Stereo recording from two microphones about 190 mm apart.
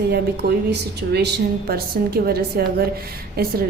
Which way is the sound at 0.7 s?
60° right (ahead or behind).